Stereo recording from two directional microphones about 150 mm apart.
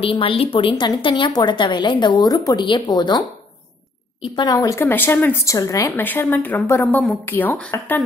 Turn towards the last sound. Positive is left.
turn(degrees=10)  # may be behind; listen again after turning